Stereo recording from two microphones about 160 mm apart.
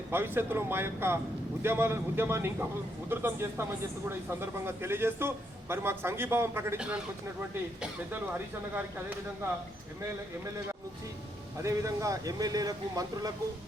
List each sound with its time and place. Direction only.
0.1 s a man's voice: 15° right (ahead or behind)
11.5 s speech: 20° right (ahead or behind)